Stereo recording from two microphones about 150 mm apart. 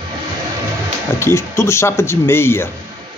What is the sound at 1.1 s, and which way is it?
Speech, 15° left (ahead or behind).